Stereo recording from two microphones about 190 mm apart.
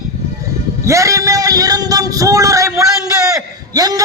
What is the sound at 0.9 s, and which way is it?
Speech, 15° right (ahead or behind).